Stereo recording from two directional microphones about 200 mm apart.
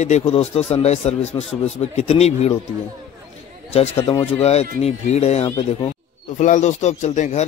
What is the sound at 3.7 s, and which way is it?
Speech, 30° left (ahead or behind).